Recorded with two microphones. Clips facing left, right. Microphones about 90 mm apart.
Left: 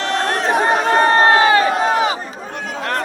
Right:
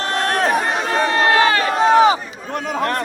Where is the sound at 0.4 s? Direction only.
30° left (ahead or behind).